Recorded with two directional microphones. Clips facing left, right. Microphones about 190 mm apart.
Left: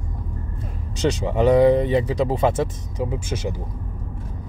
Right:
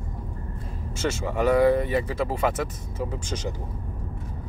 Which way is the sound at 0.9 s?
15° left (ahead or behind).